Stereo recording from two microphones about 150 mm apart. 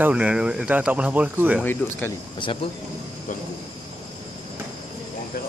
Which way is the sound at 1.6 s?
15° left (ahead or behind).